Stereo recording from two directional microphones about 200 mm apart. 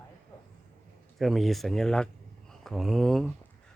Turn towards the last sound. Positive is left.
turn(degrees=0)  # may be behind; listen again after turning